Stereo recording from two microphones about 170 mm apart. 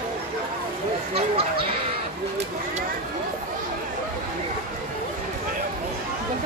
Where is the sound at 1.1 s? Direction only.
35° right (ahead or behind).